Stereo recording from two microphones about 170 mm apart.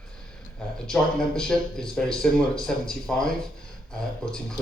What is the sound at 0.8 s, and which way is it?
Speech, 5° left (ahead or behind).